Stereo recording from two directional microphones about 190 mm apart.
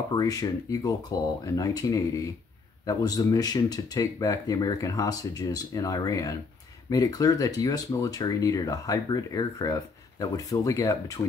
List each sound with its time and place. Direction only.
0.1 s speech: 20° left (ahead or behind)